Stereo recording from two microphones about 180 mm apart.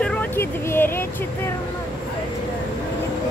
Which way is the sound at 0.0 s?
5° left (ahead or behind).